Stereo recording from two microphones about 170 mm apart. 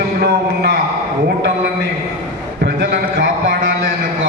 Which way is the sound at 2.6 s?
70° right (ahead or behind).